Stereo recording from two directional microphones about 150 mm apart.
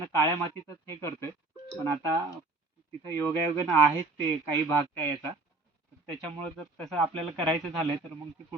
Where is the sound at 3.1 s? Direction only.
15° left (ahead or behind).